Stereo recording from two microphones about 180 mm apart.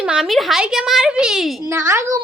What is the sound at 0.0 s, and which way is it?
A woman's voice, 5° right (ahead or behind).